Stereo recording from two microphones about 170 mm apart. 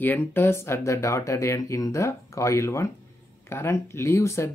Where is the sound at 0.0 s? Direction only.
10° left (ahead or behind).